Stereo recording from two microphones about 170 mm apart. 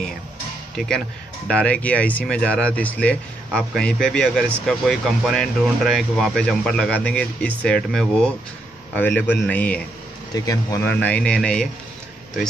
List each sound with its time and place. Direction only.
0.7 s speech: 5° left (ahead or behind)
10.3 s speech: 20° left (ahead or behind)
10.8 s speech: 10° left (ahead or behind)